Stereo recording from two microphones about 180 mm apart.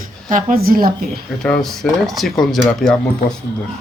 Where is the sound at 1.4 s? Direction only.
Centre (ahead or behind).